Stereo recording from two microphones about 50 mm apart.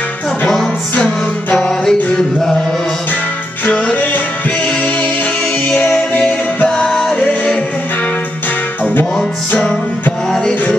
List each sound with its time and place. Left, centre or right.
1.9 s music: centre
3.6 s music: left
5.9 s music: left
6.9 s music: centre